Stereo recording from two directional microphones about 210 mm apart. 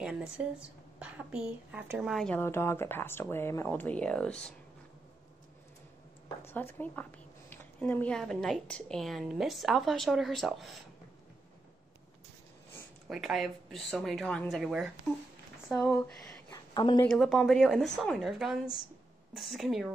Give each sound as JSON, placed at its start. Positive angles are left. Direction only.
{"t": 0.0, "sound": "a woman's voice", "side_deg": -5}
{"t": 6.4, "sound": "a woman's voice", "side_deg": 10}
{"t": 13.1, "sound": "a woman's voice", "side_deg": 0}
{"t": 16.7, "sound": "speech", "side_deg": 20}
{"t": 17.0, "sound": "a woman's voice", "side_deg": 0}